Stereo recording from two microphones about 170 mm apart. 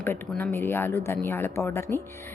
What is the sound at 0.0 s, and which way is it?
Speech, 10° left (ahead or behind).